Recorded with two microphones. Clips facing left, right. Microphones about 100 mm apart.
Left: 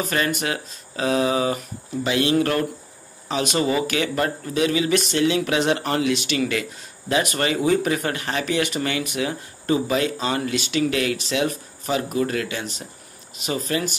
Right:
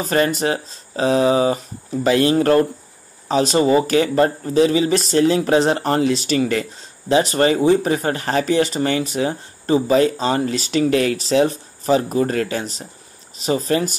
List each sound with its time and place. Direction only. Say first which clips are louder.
0.0 s speech: right 5 dB; 35° right (ahead or behind)